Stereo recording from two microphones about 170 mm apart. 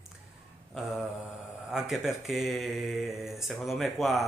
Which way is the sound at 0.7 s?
Centre (ahead or behind).